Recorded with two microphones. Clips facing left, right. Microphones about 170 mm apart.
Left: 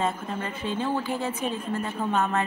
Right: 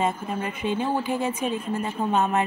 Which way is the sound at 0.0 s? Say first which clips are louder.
Right 2 dB; 15° right (ahead or behind).